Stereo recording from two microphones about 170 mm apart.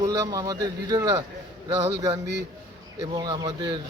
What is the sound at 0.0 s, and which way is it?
Speech, 20° right (ahead or behind).